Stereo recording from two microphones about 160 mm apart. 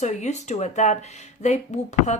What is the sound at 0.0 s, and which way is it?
Speech, 45° left (ahead or behind).